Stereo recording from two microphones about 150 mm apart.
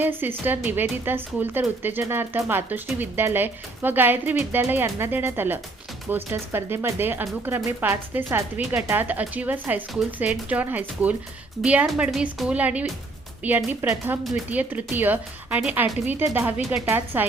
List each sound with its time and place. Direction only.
0.0 s speech: 15° right (ahead or behind)
14.3 s speech: centre (ahead or behind)
14.6 s speech: 10° right (ahead or behind)